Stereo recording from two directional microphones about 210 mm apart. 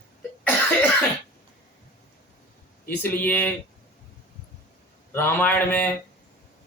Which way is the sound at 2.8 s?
10° left (ahead or behind).